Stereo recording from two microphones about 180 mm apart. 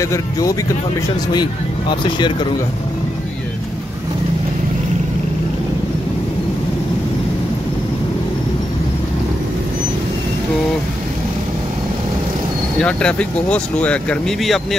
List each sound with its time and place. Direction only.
0.0 s speech: 20° left (ahead or behind)
12.7 s speech: 5° left (ahead or behind)